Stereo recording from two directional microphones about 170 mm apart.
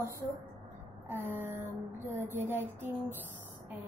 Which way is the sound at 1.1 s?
15° right (ahead or behind).